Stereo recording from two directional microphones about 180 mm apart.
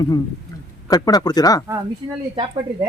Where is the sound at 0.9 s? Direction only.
20° left (ahead or behind).